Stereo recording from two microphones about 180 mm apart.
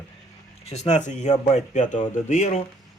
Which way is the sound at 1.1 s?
40° left (ahead or behind).